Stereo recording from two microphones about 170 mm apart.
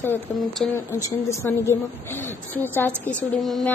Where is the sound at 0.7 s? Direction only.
15° left (ahead or behind).